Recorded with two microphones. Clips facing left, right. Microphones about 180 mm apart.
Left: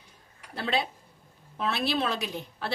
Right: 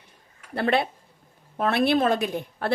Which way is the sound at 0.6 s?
60° right (ahead or behind).